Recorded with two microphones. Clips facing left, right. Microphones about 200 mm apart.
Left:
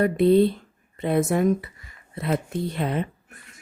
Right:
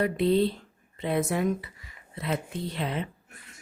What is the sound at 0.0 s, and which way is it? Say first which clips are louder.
Speech: left 6 dB; 50° left (ahead or behind).